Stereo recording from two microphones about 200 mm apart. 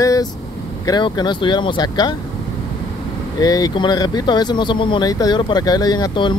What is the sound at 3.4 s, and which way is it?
Speech, 20° left (ahead or behind).